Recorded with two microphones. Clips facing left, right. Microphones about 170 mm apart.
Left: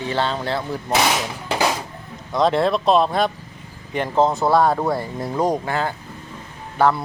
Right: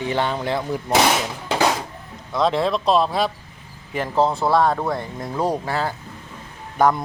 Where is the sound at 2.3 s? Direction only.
Centre (ahead or behind).